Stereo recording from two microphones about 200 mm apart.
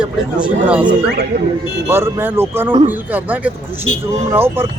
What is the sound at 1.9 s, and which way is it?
Speech, 10° right (ahead or behind).